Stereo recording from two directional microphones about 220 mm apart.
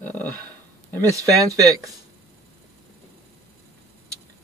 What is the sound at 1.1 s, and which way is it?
Speech, 15° right (ahead or behind).